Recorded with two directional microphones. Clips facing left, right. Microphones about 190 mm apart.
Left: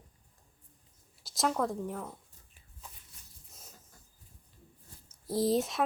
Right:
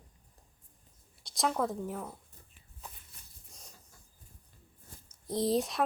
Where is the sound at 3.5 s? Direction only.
5° left (ahead or behind).